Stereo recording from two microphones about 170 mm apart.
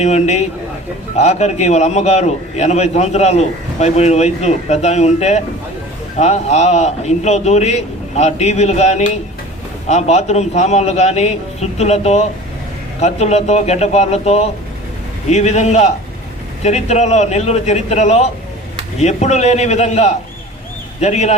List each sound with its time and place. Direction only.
0.0 s a man's voice: 40° left (ahead or behind)